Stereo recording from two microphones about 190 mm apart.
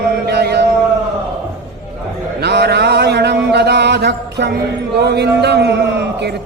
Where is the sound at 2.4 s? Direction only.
60° right (ahead or behind).